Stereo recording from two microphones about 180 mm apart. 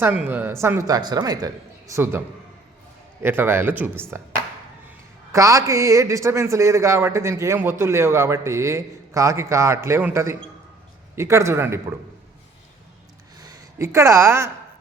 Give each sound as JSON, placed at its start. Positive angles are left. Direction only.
{"t": 0.0, "sound": "a man's voice", "side_deg": -10}
{"t": 3.2, "sound": "a man's voice", "side_deg": -10}
{"t": 13.4, "sound": "speech", "side_deg": -20}